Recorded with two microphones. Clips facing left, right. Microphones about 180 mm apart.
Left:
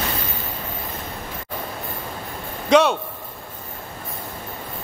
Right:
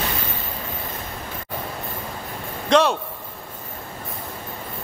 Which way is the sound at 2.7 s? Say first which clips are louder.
Left 2 dB; centre (ahead or behind).